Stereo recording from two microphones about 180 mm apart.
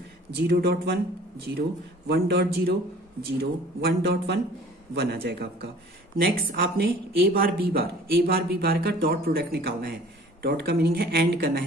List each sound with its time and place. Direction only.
0.4 s speech: 65° right (ahead or behind)
2.0 s speech: 65° right (ahead or behind)